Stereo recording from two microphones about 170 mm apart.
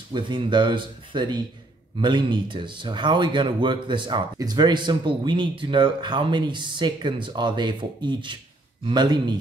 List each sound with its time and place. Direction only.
0.1 s speech: 25° right (ahead or behind)